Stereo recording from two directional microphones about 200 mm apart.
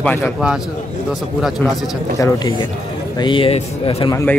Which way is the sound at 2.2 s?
15° left (ahead or behind).